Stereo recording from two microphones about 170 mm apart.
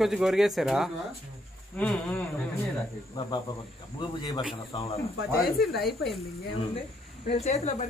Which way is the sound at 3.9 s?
25° left (ahead or behind).